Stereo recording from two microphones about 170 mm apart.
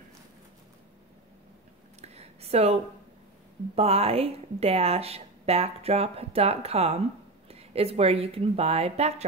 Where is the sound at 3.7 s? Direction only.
35° right (ahead or behind).